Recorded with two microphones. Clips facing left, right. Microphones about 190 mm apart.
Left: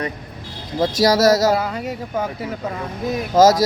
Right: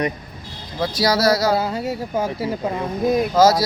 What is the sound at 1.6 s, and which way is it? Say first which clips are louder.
Speech: right 2 dB; 5° right (ahead or behind).